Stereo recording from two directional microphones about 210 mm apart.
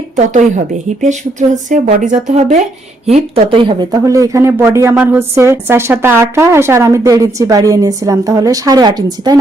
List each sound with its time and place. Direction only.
1.0 s speech: 35° right (ahead or behind); by 9.4 s 20° right (ahead or behind)